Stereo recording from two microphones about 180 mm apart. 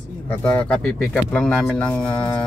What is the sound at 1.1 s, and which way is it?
Speech, 5° left (ahead or behind).